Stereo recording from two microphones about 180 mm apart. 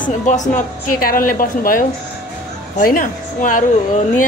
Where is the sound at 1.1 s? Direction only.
50° left (ahead or behind).